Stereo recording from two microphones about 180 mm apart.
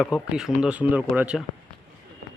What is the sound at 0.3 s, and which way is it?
Speech, 5° right (ahead or behind).